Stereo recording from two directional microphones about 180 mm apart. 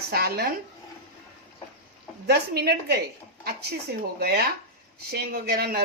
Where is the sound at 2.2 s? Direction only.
60° right (ahead or behind).